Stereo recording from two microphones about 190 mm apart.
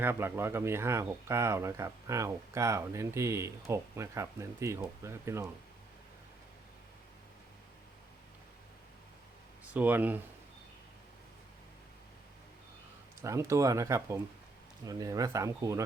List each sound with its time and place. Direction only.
0.0 s speech: 10° right (ahead or behind)
9.7 s speech: 10° right (ahead or behind)
13.2 s speech: 15° right (ahead or behind)